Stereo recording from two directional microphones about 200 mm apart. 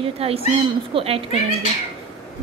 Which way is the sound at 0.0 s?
30° right (ahead or behind).